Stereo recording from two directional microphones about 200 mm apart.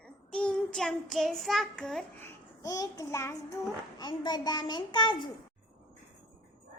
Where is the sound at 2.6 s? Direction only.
15° left (ahead or behind).